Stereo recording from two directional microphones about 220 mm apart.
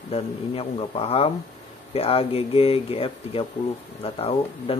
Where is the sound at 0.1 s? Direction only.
25° left (ahead or behind).